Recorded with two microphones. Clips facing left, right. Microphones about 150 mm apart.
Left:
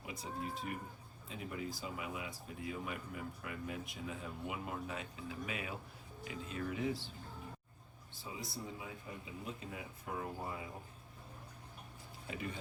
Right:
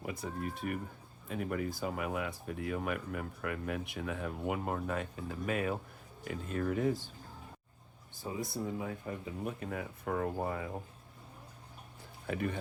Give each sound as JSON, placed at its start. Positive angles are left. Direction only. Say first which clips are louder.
{"t": 0.0, "sound": "speech", "louder": "right 5 dB", "side_deg": -55}
{"t": 8.1, "sound": "speech", "louder": "right 8 dB", "side_deg": -50}
{"t": 12.3, "sound": "speech", "louder": "right 8 dB", "side_deg": -55}